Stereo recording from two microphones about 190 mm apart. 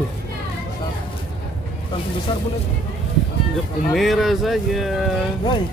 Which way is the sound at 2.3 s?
25° left (ahead or behind).